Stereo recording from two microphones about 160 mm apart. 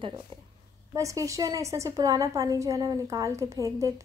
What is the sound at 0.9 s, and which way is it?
A woman's voice, 20° right (ahead or behind).